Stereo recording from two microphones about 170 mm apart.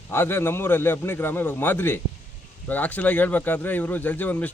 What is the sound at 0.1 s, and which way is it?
A man's voice, 15° left (ahead or behind).